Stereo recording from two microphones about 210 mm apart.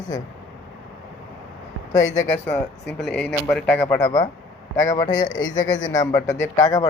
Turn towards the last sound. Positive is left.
turn(degrees=15)  # may be behind; listen again after turning